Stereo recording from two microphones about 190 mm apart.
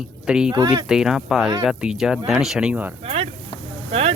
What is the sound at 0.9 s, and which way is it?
Speech, 5° right (ahead or behind).